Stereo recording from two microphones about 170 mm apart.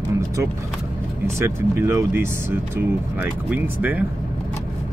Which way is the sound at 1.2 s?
15° right (ahead or behind).